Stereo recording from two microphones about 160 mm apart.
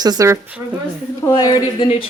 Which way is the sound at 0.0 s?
25° right (ahead or behind).